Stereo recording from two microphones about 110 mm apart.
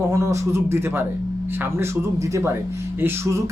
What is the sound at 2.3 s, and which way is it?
Speech, 25° right (ahead or behind).